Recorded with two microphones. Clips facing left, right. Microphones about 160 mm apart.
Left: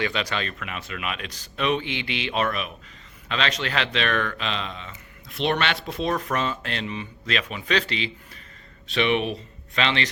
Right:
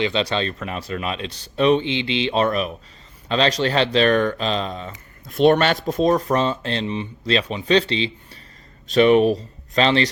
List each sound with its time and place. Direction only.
0.0 s speech: 25° right (ahead or behind)
8.9 s speech: 40° right (ahead or behind)